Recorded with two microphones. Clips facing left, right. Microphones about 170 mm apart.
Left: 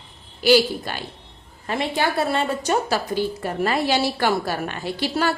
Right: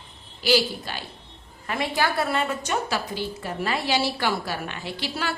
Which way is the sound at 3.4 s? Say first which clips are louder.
Left 3 dB; 45° left (ahead or behind).